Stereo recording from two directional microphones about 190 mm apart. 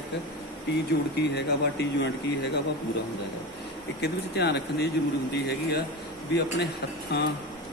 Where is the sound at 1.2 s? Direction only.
60° left (ahead or behind).